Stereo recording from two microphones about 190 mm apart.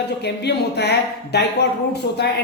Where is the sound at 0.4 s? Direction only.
60° left (ahead or behind).